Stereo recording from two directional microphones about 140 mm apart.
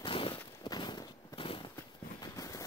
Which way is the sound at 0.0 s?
40° left (ahead or behind).